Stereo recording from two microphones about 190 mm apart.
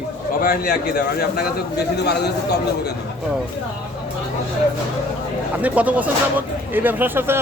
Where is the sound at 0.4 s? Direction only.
50° left (ahead or behind).